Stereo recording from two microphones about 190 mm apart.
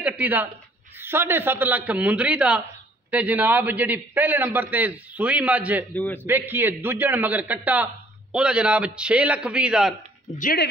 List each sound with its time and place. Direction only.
0.0 s a man's voice: 10° right (ahead or behind)
5.9 s a man's voice: 10° left (ahead or behind)
6.2 s a man's voice: 10° right (ahead or behind)
10.3 s speech: 45° left (ahead or behind)